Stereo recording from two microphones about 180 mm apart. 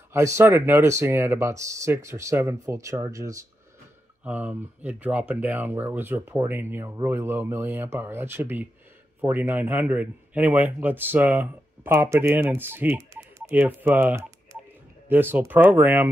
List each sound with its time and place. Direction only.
0.1 s a man's voice: 15° right (ahead or behind)